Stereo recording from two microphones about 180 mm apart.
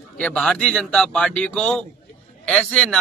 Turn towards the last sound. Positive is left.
turn(degrees=5)  # may be behind; listen again after turning